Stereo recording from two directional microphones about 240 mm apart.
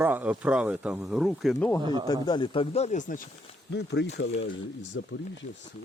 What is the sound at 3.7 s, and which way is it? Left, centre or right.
Speech, left.